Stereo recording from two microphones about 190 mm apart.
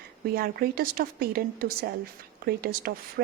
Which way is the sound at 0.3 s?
50° right (ahead or behind).